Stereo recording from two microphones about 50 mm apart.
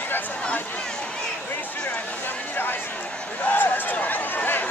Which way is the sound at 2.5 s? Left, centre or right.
Left.